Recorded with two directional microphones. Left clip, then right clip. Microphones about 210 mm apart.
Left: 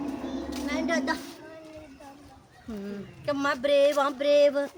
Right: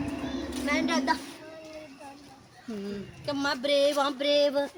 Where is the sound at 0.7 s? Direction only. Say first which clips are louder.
Right 1 dB; 45° right (ahead or behind).